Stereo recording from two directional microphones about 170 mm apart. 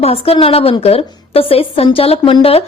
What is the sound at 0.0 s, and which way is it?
A woman's voice, 35° left (ahead or behind).